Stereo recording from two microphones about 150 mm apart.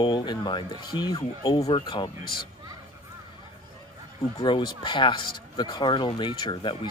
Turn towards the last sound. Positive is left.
turn(degrees=30)  # may be behind; listen again after turning